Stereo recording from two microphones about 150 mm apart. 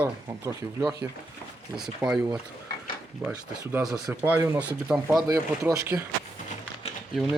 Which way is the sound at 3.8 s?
20° right (ahead or behind).